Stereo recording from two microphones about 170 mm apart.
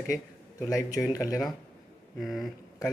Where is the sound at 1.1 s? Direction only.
20° left (ahead or behind).